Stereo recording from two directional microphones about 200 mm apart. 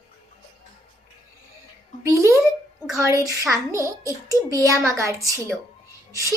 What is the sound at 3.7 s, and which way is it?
A child's voice, 15° right (ahead or behind).